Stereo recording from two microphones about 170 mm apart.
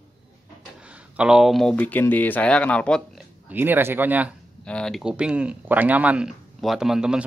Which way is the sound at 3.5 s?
10° right (ahead or behind).